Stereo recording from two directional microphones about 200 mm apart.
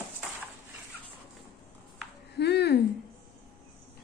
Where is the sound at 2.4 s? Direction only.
55° left (ahead or behind).